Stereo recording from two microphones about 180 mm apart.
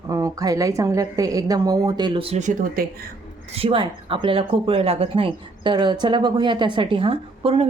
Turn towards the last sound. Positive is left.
turn(degrees=-30)  # may be behind; listen again after turning